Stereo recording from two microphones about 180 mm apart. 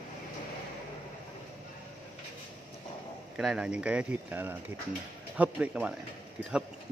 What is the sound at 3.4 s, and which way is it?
Speech, 5° right (ahead or behind).